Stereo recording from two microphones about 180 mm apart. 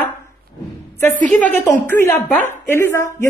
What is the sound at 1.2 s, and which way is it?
Speech, 5° left (ahead or behind).